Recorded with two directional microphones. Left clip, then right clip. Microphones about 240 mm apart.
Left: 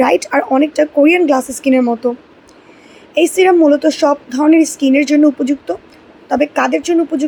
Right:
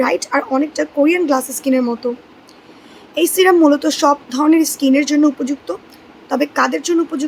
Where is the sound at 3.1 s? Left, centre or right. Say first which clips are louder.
Left 2 dB; centre.